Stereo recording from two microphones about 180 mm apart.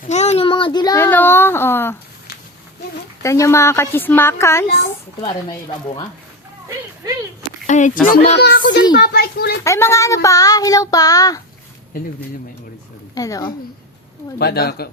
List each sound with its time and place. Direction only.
0.1 s a child's voice: 40° left (ahead or behind); by 2.0 s 10° left (ahead or behind)
3.2 s a woman's voice: 15° left (ahead or behind)
5.2 s child singing: 25° left (ahead or behind)
7.7 s a sound: 45° left (ahead or behind)
8.0 s a child's voice: 50° left (ahead or behind)
8.4 s speech: 70° left (ahead or behind)
9.6 s child singing: 15° left (ahead or behind)
13.1 s child singing: 20° left (ahead or behind)
14.3 s speech: 60° left (ahead or behind)